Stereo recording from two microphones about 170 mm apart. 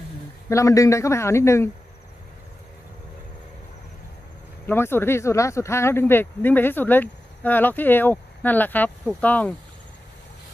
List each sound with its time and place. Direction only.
0.5 s speech: 20° left (ahead or behind)
4.6 s speech: 15° left (ahead or behind)